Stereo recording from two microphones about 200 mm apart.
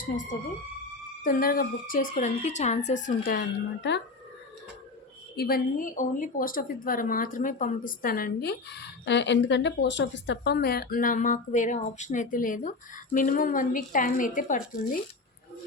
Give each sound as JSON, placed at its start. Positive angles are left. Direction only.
{"t": 1.2, "sound": "a woman's voice", "side_deg": 45}
{"t": 5.4, "sound": "a woman's voice", "side_deg": 50}